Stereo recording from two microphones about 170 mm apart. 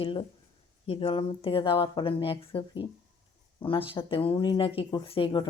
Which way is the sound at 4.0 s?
30° left (ahead or behind).